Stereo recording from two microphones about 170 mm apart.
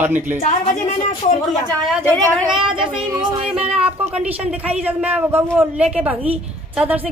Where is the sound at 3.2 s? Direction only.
25° right (ahead or behind).